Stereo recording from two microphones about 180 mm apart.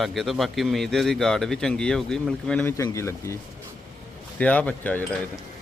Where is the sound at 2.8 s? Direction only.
15° left (ahead or behind).